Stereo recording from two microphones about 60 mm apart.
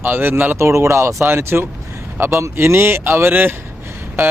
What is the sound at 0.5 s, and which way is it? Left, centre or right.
Speech, right.